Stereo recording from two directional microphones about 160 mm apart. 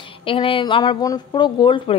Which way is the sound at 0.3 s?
35° left (ahead or behind).